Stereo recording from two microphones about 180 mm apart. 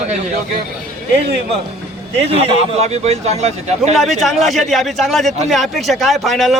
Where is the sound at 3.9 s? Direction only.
Centre (ahead or behind).